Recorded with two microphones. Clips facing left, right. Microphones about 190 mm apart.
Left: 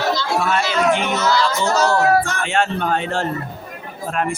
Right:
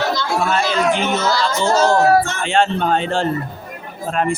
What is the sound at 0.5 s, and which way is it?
Speech, 30° right (ahead or behind).